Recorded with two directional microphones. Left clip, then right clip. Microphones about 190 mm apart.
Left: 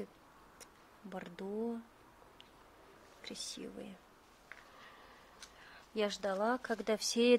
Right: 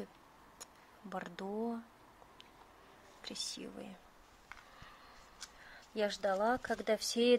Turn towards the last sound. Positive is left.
turn(degrees=15)  # may be behind; listen again after turning